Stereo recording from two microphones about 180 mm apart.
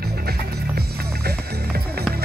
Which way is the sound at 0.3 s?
60° right (ahead or behind).